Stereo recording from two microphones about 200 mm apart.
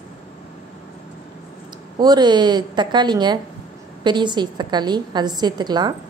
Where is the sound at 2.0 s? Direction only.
20° right (ahead or behind).